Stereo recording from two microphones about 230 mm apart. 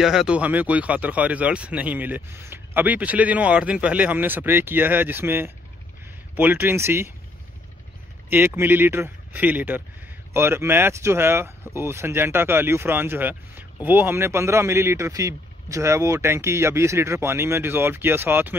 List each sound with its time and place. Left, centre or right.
0.0 s speech: centre
8.3 s speech: centre